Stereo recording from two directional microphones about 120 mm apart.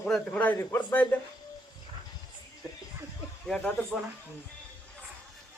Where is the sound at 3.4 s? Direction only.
5° left (ahead or behind).